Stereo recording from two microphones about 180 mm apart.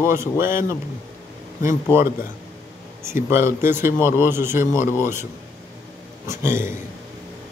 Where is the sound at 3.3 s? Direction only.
15° right (ahead or behind).